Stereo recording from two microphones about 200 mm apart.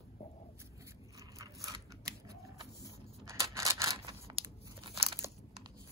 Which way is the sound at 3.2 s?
15° right (ahead or behind).